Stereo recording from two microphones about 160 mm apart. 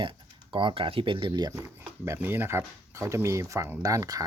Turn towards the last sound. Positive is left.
turn(degrees=-20)  # may be behind; listen again after turning